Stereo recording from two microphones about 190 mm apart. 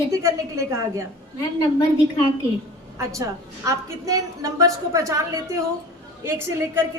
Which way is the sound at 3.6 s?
15° right (ahead or behind).